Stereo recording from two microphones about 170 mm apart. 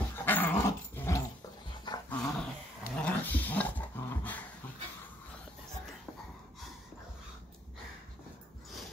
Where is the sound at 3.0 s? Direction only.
10° left (ahead or behind).